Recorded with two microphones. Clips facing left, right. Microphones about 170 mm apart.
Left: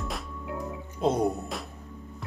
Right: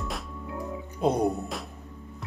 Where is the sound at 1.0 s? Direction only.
10° right (ahead or behind).